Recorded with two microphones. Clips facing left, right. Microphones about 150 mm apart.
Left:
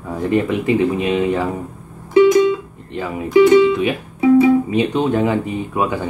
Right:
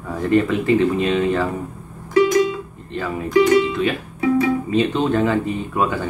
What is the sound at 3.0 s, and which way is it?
Speech, 15° left (ahead or behind).